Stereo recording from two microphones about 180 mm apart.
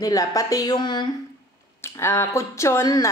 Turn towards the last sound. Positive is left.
turn(degrees=20)  # may be behind; listen again after turning